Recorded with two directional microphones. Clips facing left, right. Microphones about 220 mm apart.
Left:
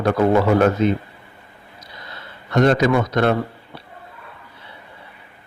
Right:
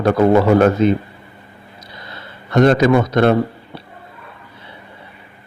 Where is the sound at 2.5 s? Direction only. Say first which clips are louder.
Right 4 dB; 35° right (ahead or behind).